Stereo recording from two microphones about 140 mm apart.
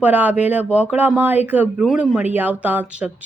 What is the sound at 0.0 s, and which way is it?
A woman's voice, 10° right (ahead or behind).